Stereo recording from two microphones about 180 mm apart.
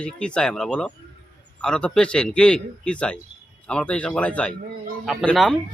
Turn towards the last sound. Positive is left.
turn(degrees=0)  # may be behind; listen again after turning